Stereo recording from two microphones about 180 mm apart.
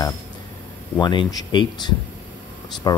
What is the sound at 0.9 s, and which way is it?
Speech, 25° left (ahead or behind).